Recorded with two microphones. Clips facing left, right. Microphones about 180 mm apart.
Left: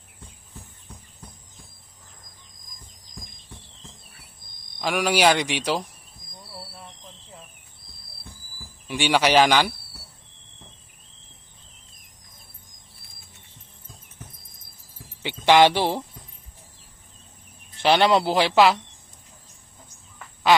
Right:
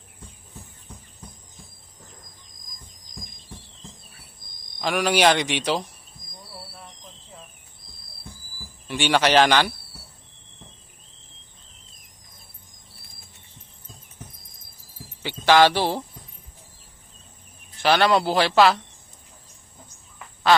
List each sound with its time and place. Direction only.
4.8 s speech: 10° left (ahead or behind)
8.9 s speech: 10° left (ahead or behind)
14.9 s jingle bell: 20° left (ahead or behind)
17.8 s speech: 20° left (ahead or behind)